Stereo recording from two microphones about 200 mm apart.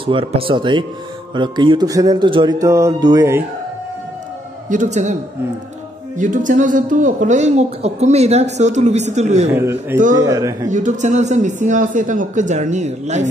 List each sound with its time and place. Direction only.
0.0 s speech: 25° right (ahead or behind)
4.6 s a man's voice: 35° right (ahead or behind)
6.1 s a man's voice: 40° right (ahead or behind)
9.5 s speech: 10° right (ahead or behind)
10.7 s a man's voice: 35° right (ahead or behind)